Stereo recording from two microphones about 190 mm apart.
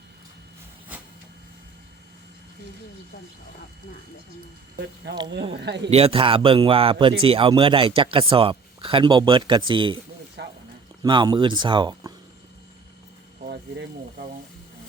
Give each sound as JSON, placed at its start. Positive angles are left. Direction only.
{"t": 5.1, "sound": "a man's voice", "side_deg": -65}
{"t": 5.9, "sound": "speech", "side_deg": -30}
{"t": 10.4, "sound": "wild animals", "side_deg": -65}
{"t": 11.0, "sound": "speech", "side_deg": -20}